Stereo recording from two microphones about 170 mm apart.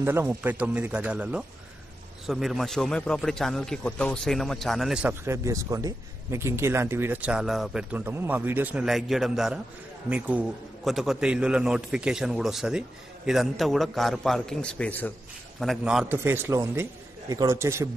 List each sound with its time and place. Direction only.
0.0 s a man's voice: 15° right (ahead or behind); by 15.1 s 10° left (ahead or behind)
15.6 s a man's voice: centre (ahead or behind)